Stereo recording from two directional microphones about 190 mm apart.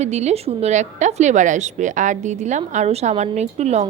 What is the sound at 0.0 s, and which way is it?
A woman's voice, 35° right (ahead or behind).